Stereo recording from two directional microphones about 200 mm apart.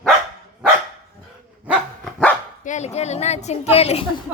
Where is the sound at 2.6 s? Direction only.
35° left (ahead or behind).